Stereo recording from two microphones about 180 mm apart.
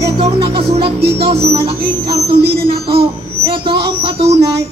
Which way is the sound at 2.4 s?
60° right (ahead or behind).